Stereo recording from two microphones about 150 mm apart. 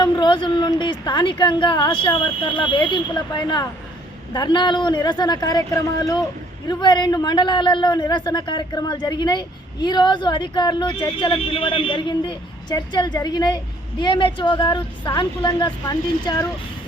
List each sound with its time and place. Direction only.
0.0 s a man's voice: 30° left (ahead or behind)